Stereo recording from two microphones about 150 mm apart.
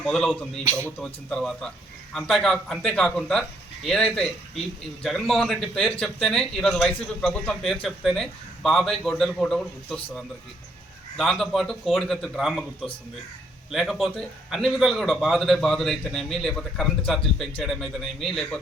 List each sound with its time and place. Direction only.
0.0 s speech: centre (ahead or behind)
0.6 s speech: 20° right (ahead or behind)
0.9 s speech: 5° left (ahead or behind)